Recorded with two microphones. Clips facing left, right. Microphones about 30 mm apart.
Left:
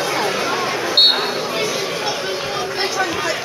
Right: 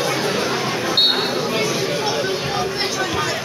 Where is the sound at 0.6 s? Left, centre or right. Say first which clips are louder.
Left 1 dB; centre.